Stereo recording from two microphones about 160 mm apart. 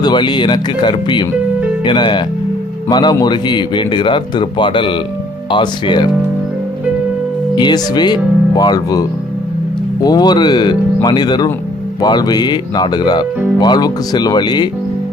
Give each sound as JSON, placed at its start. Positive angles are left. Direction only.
{"t": 0.0, "sound": "speech", "side_deg": 25}
{"t": 7.5, "sound": "speech", "side_deg": 25}